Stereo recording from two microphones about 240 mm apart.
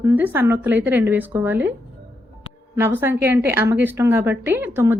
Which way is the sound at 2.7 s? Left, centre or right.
Centre.